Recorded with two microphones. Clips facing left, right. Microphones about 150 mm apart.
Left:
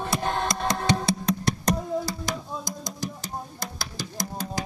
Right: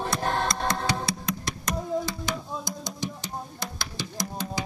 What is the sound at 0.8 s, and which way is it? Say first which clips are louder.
Music: left 4 dB; 25° left (ahead or behind).